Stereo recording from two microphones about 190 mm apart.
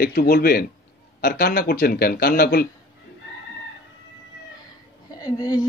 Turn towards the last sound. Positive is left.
turn(degrees=20)  # may be behind; listen again after turning